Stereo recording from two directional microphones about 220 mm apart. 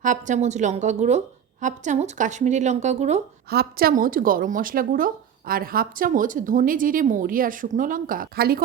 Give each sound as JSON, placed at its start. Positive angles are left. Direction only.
{"t": 0.0, "sound": "a woman's voice", "side_deg": -35}
{"t": 3.5, "sound": "a woman's voice", "side_deg": -45}